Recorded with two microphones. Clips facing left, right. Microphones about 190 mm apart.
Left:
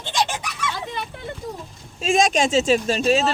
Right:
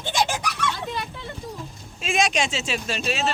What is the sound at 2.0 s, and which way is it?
Speech, 45° left (ahead or behind).